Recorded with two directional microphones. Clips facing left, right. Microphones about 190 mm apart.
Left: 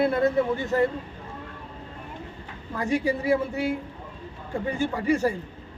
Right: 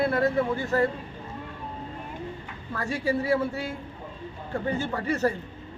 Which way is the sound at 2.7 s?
15° left (ahead or behind).